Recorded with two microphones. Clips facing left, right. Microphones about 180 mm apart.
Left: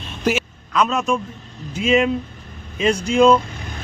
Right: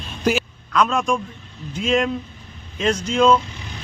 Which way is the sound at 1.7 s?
5° left (ahead or behind).